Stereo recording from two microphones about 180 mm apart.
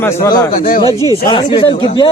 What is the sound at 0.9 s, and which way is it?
Speech, 20° right (ahead or behind).